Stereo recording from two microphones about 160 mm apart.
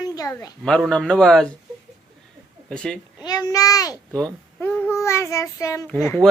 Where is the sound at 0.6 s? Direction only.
5° left (ahead or behind).